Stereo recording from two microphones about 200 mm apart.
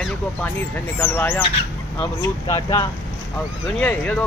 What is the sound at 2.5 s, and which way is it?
Speech, 20° left (ahead or behind).